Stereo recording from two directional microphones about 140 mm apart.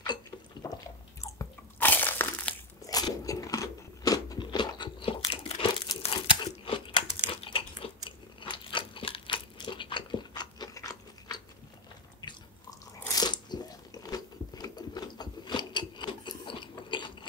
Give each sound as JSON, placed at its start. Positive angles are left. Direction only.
{"t": 0.0, "sound": "a sound", "side_deg": 30}
{"t": 1.2, "sound": "crunch", "side_deg": 15}
{"t": 2.9, "sound": "biting", "side_deg": 25}
{"t": 13.1, "sound": "biting", "side_deg": 30}